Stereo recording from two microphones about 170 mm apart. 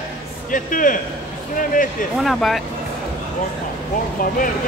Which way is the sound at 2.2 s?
Centre (ahead or behind).